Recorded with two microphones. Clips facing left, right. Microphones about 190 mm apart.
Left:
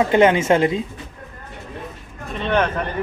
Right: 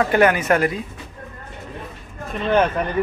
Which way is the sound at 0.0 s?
20° left (ahead or behind).